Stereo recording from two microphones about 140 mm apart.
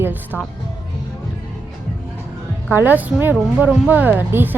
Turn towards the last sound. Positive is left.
turn(degrees=-15)  # may be behind; listen again after turning